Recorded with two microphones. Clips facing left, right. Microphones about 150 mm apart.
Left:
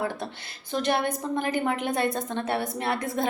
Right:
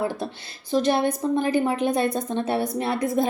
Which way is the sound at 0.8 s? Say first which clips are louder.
Right 4 dB; 20° right (ahead or behind).